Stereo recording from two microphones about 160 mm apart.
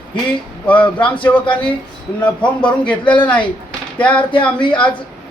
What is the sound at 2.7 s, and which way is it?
A man's voice, 10° left (ahead or behind).